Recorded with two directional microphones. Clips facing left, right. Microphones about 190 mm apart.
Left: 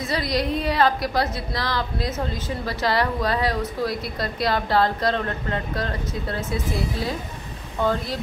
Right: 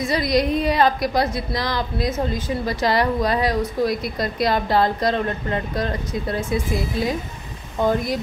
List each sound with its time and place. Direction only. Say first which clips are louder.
0.0 s a woman's voice: right 5 dB; 15° right (ahead or behind)